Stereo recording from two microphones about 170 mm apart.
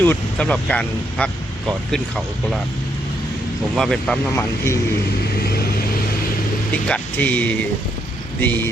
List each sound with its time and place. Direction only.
0.0 s speech: 10° left (ahead or behind)
3.8 s speech: centre (ahead or behind)
5.4 s vehicle: 65° left (ahead or behind)
6.8 s speech: 5° left (ahead or behind)